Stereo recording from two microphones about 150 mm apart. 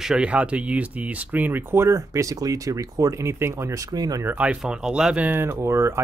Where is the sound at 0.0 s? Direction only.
5° right (ahead or behind).